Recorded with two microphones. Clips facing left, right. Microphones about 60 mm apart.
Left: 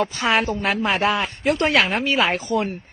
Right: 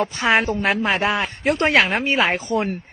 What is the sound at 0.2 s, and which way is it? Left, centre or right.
A woman's voice, right.